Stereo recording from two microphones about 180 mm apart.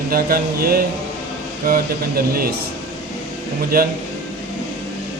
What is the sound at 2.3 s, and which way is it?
Speech, 55° right (ahead or behind).